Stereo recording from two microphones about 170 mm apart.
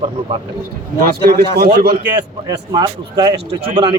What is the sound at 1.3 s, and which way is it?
Speech, 65° right (ahead or behind).